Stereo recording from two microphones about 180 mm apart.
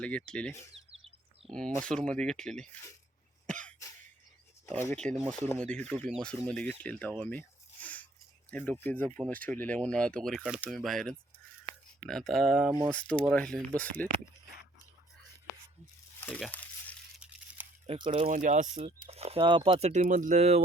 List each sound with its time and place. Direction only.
0.0 s speech: 5° left (ahead or behind)
4.7 s speech: 15° left (ahead or behind)
4.9 s speech: 5° left (ahead or behind)
7.2 s a sound: 10° left (ahead or behind)
8.4 s speech: 10° left (ahead or behind)
16.2 s a sound: 10° left (ahead or behind)
17.2 s a sound: 5° right (ahead or behind)
17.8 s speech: 25° right (ahead or behind)
18.1 s speech: 45° right (ahead or behind)